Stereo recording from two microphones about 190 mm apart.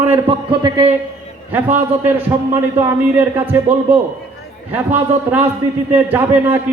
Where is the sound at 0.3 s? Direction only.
30° right (ahead or behind).